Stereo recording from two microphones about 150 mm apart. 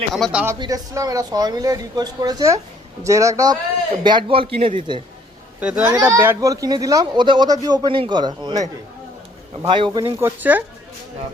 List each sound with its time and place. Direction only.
0.1 s speech: 5° right (ahead or behind)
0.6 s a man's voice: 25° right (ahead or behind)
5.5 s speech: 10° right (ahead or behind)
5.9 s speech: 20° right (ahead or behind)
9.6 s a man's voice: 35° right (ahead or behind)
10.2 s speech: 15° right (ahead or behind)